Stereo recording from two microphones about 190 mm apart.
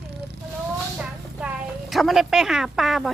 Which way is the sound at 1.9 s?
Centre (ahead or behind).